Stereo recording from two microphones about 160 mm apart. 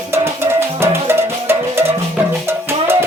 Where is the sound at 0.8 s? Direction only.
15° right (ahead or behind).